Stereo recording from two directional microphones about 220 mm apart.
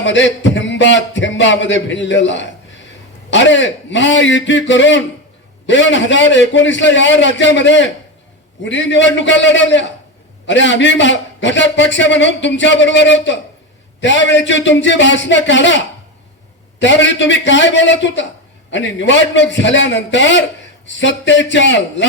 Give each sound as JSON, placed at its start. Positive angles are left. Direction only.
{"t": 0.0, "sound": "a man's voice", "side_deg": 55}
{"t": 16.8, "sound": "a man's voice", "side_deg": 55}